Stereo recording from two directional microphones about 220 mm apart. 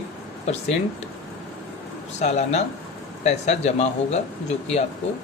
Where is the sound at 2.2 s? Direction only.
30° left (ahead or behind).